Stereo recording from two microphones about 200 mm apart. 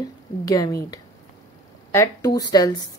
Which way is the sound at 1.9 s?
15° left (ahead or behind).